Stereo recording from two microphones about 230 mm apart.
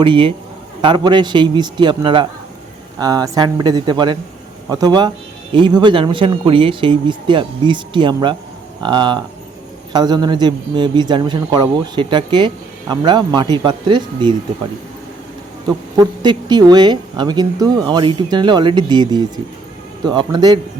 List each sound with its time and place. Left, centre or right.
0.0 s speech: right
15.6 s speech: centre